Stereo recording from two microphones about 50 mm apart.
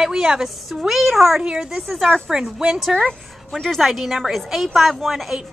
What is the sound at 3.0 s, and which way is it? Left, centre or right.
A woman's voice, centre.